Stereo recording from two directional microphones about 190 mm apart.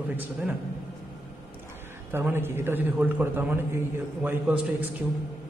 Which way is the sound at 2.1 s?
10° right (ahead or behind).